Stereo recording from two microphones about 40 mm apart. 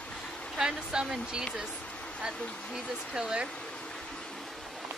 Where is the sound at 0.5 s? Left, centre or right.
Centre.